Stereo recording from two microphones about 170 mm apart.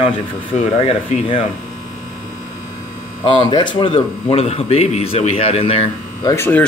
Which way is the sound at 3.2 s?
30° left (ahead or behind).